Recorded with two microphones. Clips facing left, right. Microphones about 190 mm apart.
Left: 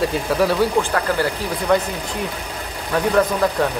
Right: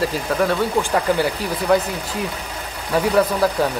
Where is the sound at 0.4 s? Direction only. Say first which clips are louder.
Left 2 dB; 5° left (ahead or behind).